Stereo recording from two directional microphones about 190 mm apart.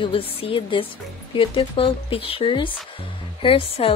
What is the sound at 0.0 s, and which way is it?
A woman's voice, 30° left (ahead or behind).